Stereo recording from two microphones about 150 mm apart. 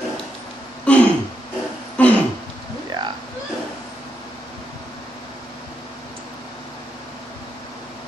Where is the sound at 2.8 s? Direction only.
30° right (ahead or behind).